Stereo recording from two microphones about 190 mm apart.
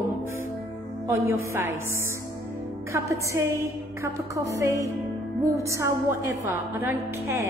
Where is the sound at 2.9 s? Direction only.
15° right (ahead or behind).